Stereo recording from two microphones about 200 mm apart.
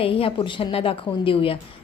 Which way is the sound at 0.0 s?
25° left (ahead or behind).